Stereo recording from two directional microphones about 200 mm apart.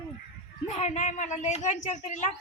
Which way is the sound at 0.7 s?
35° left (ahead or behind).